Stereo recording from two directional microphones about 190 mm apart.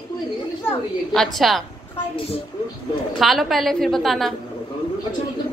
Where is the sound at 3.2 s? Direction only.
Centre (ahead or behind).